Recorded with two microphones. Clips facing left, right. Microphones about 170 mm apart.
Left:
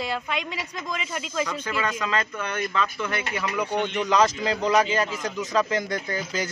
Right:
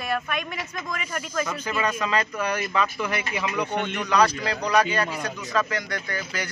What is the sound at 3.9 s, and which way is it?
Speech, 20° left (ahead or behind).